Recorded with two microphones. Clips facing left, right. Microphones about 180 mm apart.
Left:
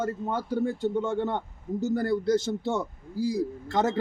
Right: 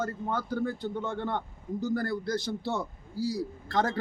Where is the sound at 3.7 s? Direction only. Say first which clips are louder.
Left 2 dB; 25° left (ahead or behind).